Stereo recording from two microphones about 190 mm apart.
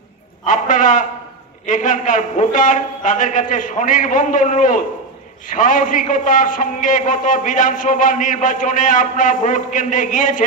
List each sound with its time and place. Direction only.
0.5 s a man's voice: 45° left (ahead or behind)